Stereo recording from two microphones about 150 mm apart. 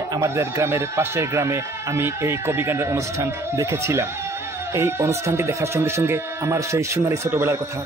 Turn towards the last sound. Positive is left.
turn(degrees=-20)  # may be behind; listen again after turning